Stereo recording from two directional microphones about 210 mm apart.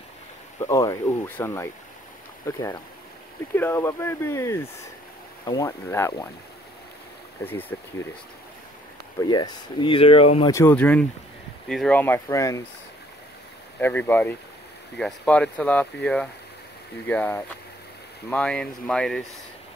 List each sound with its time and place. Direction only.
0.6 s speech: 15° left (ahead or behind)
7.7 s speech: 10° left (ahead or behind)
9.3 s speech: 20° left (ahead or behind)
10.5 s speech: 10° left (ahead or behind)
13.7 s speech: 10° left (ahead or behind)